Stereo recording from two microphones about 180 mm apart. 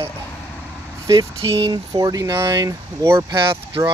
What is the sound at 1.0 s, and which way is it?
Speech, 20° right (ahead or behind).